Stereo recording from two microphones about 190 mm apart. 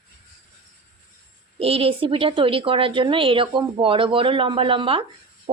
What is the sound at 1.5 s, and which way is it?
A woman's voice, 30° right (ahead or behind).